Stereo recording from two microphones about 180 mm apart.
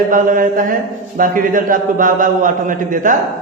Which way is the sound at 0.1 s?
50° right (ahead or behind).